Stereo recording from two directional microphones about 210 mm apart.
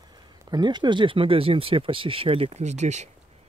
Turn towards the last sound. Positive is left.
turn(degrees=-35)  # may be behind; listen again after turning